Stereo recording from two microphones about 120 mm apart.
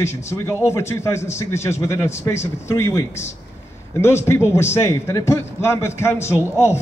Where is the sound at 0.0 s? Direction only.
25° left (ahead or behind).